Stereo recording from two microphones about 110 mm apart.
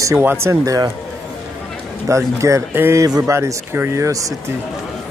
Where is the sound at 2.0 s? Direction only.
25° right (ahead or behind).